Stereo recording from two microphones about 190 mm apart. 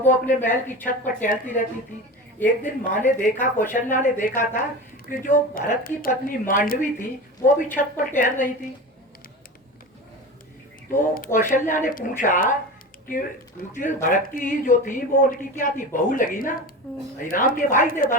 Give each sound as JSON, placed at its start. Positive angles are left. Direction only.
{"t": 0.0, "sound": "a woman's voice", "side_deg": 45}
{"t": 2.6, "sound": "a woman's voice", "side_deg": 45}
{"t": 10.9, "sound": "a woman's voice", "side_deg": 50}
{"t": 13.7, "sound": "a woman's voice", "side_deg": 45}